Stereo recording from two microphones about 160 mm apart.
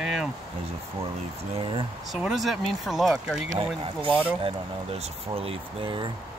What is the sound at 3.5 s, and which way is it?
Speech, 40° right (ahead or behind).